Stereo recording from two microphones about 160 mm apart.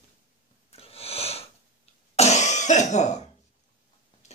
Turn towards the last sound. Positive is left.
turn(degrees=45)  # may be behind; listen again after turning